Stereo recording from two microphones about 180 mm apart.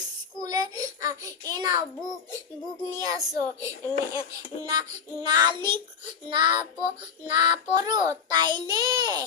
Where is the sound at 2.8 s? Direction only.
20° right (ahead or behind).